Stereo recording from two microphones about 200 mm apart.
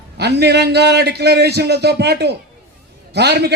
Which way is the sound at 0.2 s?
55° right (ahead or behind).